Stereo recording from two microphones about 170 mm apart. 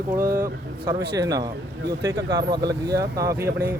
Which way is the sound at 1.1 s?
20° right (ahead or behind).